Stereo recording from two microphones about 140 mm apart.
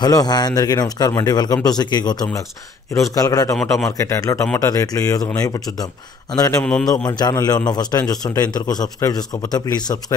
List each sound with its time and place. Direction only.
0.0 s a man's voice: 30° left (ahead or behind)
6.6 s a man's voice: 5° left (ahead or behind)
7.1 s a man's voice: 25° left (ahead or behind)